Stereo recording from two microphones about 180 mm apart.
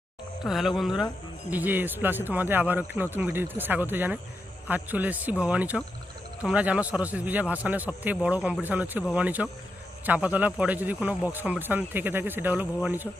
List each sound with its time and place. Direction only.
0.4 s a man's voice: centre (ahead or behind)